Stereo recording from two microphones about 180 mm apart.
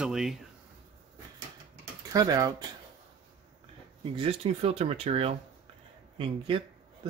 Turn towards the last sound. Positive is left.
turn(degrees=-30)  # may be behind; listen again after turning